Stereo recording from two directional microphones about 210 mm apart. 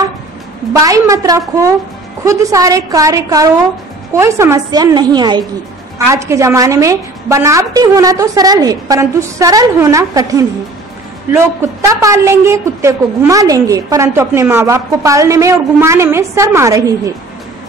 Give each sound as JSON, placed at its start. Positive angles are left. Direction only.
{"t": 0.8, "sound": "a woman's voice", "side_deg": -15}